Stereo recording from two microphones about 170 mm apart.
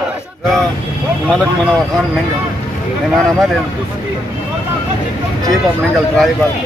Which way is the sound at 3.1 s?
Centre (ahead or behind).